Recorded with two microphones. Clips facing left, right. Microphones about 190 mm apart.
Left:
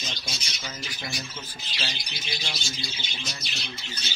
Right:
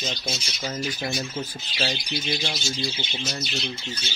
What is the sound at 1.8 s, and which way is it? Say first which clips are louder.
Speech: right 10 dB; 50° right (ahead or behind).